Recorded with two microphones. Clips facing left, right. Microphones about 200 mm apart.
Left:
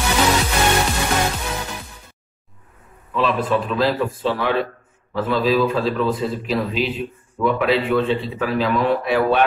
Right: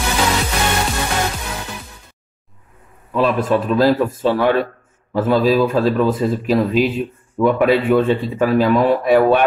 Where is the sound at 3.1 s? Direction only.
45° right (ahead or behind).